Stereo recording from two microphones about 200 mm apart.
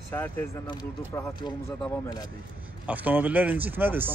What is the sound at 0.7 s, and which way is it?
Speech, 20° left (ahead or behind).